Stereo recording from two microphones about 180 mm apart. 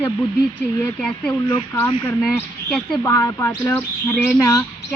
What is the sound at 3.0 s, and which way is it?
Speech, 20° left (ahead or behind).